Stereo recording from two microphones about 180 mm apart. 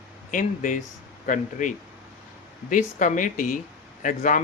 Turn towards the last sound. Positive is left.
turn(degrees=45)  # may be behind; listen again after turning